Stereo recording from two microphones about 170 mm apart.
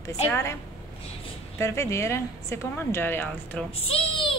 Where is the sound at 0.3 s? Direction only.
15° left (ahead or behind).